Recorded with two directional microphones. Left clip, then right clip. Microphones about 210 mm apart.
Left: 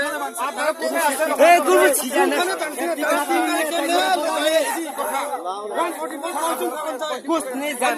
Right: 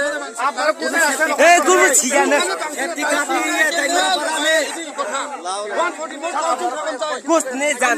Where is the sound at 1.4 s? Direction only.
40° right (ahead or behind).